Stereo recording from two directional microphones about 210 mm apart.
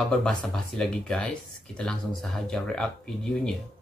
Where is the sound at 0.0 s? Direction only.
5° left (ahead or behind).